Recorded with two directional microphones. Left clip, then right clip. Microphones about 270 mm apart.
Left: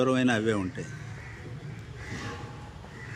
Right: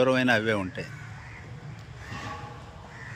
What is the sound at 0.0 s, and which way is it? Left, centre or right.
Speech, centre.